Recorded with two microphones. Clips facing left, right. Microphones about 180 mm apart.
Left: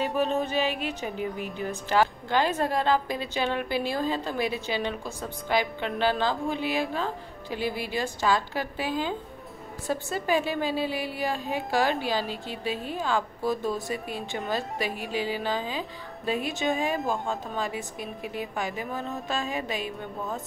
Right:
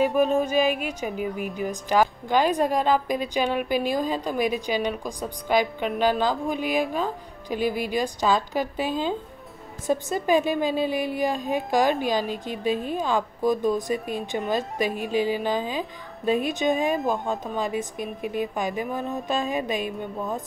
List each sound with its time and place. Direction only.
0.2 s a woman's voice: 10° right (ahead or behind)